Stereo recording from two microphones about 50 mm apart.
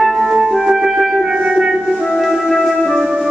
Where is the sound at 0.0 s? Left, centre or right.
Centre.